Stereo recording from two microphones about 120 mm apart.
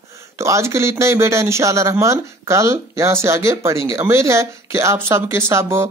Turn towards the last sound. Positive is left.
turn(degrees=-20)  # may be behind; listen again after turning